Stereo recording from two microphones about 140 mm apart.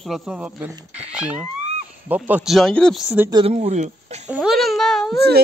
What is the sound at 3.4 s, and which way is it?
Speech, 50° right (ahead or behind).